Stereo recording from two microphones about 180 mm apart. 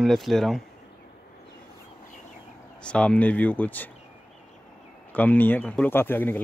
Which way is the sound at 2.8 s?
5° left (ahead or behind).